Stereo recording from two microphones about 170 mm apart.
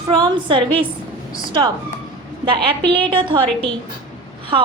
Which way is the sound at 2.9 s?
30° right (ahead or behind).